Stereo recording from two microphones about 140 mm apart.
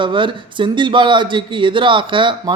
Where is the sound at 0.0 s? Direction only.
35° right (ahead or behind).